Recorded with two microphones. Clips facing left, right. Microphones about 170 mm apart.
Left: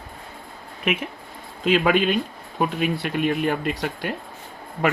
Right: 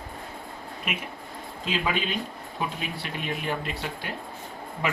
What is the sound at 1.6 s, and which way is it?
Speech, 60° left (ahead or behind).